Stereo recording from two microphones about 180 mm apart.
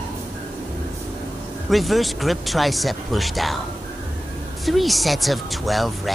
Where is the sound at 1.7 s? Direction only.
Centre (ahead or behind).